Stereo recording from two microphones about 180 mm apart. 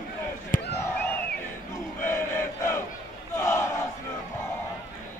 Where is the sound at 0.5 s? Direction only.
50° left (ahead or behind).